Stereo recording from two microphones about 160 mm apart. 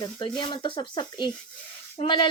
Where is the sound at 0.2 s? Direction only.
30° left (ahead or behind).